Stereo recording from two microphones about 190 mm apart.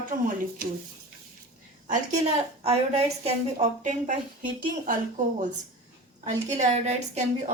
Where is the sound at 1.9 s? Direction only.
35° right (ahead or behind).